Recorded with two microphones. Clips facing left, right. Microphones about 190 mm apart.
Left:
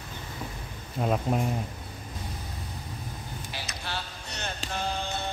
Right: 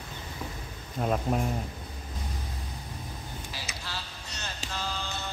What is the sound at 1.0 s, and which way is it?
Speech, 5° left (ahead or behind).